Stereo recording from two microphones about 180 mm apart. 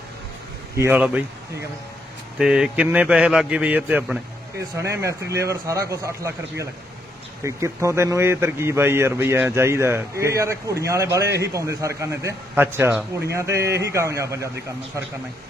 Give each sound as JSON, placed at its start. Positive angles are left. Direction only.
{"t": 0.8, "sound": "a man's voice", "side_deg": -10}
{"t": 2.4, "sound": "a man's voice", "side_deg": -5}